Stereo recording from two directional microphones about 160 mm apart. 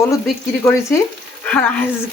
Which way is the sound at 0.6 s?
15° left (ahead or behind).